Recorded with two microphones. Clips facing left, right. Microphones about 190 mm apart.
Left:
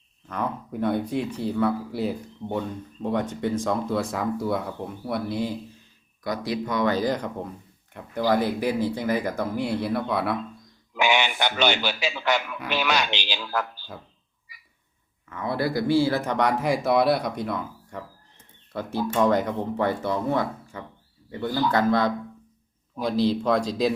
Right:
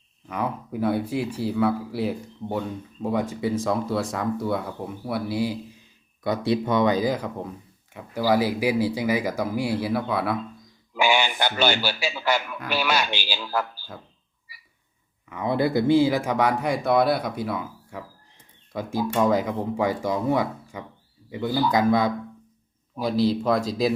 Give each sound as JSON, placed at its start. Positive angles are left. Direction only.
{"t": 0.3, "sound": "speech", "side_deg": -10}
{"t": 6.2, "sound": "a man's voice", "side_deg": -25}
{"t": 15.3, "sound": "a man's voice", "side_deg": -20}
{"t": 23.2, "sound": "speech", "side_deg": -5}